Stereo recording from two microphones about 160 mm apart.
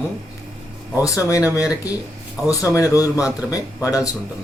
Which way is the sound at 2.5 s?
20° left (ahead or behind).